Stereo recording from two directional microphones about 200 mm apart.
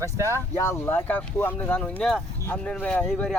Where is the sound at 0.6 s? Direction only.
15° left (ahead or behind).